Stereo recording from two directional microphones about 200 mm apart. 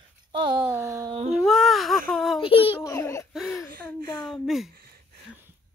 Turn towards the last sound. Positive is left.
turn(degrees=0)  # may be behind; listen again after turning